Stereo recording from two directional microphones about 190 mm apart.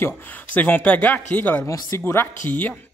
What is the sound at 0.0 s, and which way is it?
Speech, 10° left (ahead or behind).